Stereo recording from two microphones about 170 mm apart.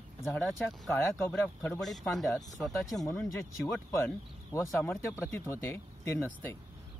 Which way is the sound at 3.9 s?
15° left (ahead or behind).